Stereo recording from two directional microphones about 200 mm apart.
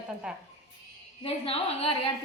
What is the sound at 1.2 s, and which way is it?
Speech, 30° left (ahead or behind).